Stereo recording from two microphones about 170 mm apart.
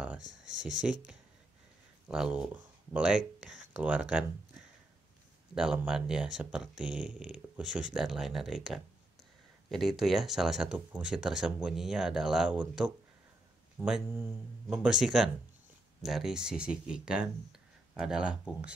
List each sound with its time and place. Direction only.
0.2 s speech: 90° right
2.0 s speech: 5° right (ahead or behind)
5.5 s speech: 5° right (ahead or behind)